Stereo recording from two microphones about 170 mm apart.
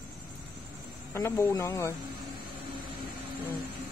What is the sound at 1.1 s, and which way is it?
Speech, 15° left (ahead or behind).